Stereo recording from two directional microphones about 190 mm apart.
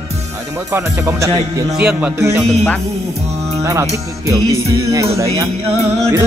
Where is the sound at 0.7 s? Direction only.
15° right (ahead or behind).